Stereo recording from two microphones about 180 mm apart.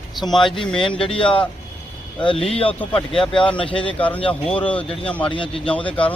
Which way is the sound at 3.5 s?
30° left (ahead or behind).